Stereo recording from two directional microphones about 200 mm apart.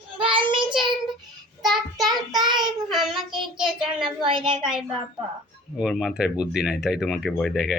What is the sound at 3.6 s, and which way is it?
Speech, 5° right (ahead or behind).